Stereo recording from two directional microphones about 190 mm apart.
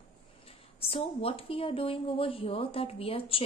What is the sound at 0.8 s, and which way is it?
Speech, 30° left (ahead or behind).